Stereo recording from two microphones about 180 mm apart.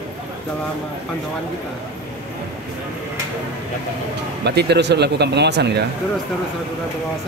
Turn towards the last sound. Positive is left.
turn(degrees=-70)  # may be behind; listen again after turning